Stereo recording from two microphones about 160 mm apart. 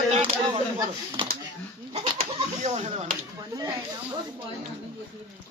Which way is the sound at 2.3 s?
45° right (ahead or behind).